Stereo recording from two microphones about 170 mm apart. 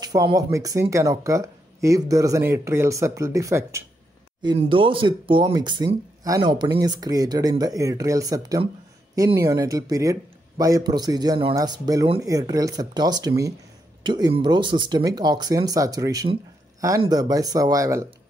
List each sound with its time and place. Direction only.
0.0 s speech: 20° right (ahead or behind)
4.4 s speech: 30° right (ahead or behind)